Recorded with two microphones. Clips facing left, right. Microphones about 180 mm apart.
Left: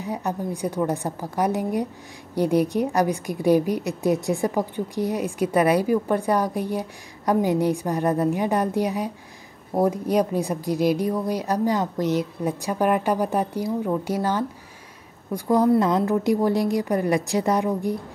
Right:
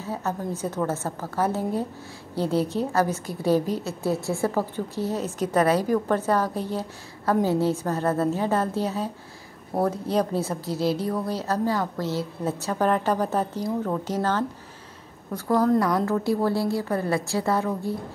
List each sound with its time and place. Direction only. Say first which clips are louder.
0.0 s a woman's voice: left 2 dB; 15° left (ahead or behind)